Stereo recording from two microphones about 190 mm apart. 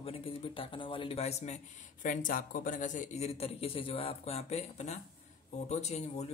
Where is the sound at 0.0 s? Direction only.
30° left (ahead or behind).